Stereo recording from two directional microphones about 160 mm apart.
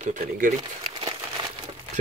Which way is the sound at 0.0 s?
50° right (ahead or behind).